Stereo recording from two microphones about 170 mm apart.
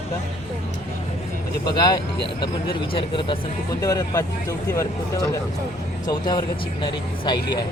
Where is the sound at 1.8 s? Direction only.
25° left (ahead or behind).